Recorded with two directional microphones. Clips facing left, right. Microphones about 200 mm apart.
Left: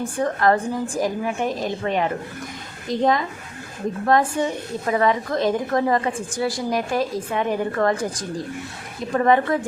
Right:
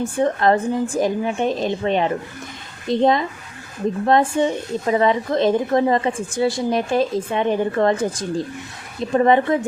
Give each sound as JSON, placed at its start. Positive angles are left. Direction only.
{"t": 0.2, "sound": "a woman's voice", "side_deg": -25}